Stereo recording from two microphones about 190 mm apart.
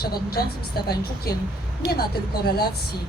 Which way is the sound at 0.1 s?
55° left (ahead or behind).